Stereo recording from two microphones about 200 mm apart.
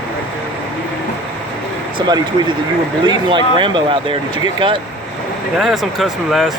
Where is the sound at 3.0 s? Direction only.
20° right (ahead or behind).